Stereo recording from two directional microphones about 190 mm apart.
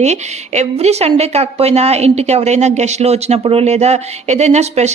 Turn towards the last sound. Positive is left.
turn(degrees=-35)  # may be behind; listen again after turning